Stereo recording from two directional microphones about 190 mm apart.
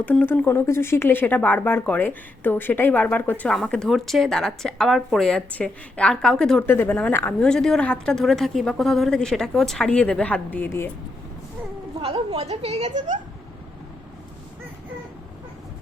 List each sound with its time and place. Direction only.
0.0 s speech: 10° left (ahead or behind)
11.9 s a woman's voice: 30° right (ahead or behind)